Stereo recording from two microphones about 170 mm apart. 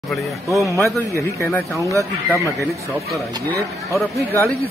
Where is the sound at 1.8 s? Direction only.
20° right (ahead or behind).